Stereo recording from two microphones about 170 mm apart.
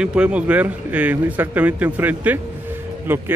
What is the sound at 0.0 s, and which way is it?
A man's voice, 5° right (ahead or behind).